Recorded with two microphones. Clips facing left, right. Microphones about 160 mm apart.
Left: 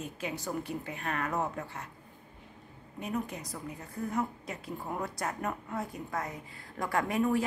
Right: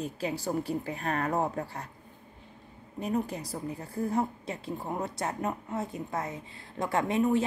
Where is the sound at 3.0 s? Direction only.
35° right (ahead or behind).